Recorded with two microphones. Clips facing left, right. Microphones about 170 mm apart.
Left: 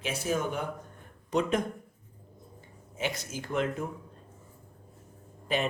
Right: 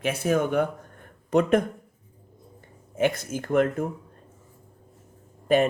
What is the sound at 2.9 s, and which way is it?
Speech, 55° right (ahead or behind).